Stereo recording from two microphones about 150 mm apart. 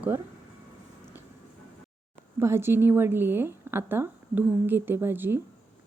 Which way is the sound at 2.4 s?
15° right (ahead or behind).